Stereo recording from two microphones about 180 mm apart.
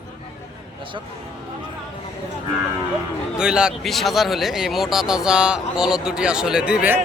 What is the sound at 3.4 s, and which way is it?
Speech, 5° right (ahead or behind).